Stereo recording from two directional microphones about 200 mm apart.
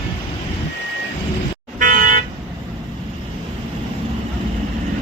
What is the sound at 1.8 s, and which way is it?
Vehicle, 45° right (ahead or behind).